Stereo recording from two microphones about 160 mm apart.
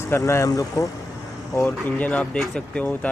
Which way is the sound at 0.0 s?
15° left (ahead or behind).